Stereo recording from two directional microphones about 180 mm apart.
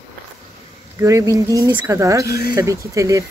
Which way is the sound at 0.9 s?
15° right (ahead or behind).